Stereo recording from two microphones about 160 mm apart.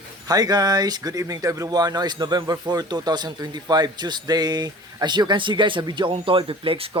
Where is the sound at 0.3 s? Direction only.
25° right (ahead or behind).